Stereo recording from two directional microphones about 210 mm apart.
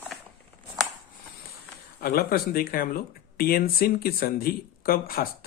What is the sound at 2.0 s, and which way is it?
Speech, 45° left (ahead or behind).